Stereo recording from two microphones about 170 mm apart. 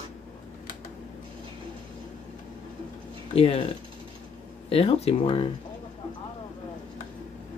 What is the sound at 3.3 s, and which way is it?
Speech, 35° left (ahead or behind).